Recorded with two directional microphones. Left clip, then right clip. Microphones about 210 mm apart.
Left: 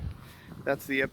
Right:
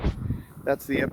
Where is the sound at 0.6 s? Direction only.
10° right (ahead or behind).